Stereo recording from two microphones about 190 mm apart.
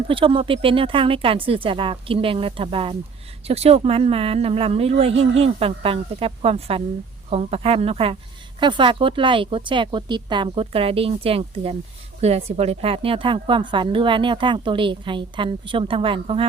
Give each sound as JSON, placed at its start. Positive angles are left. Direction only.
{"t": 0.1, "sound": "a woman's voice", "side_deg": -30}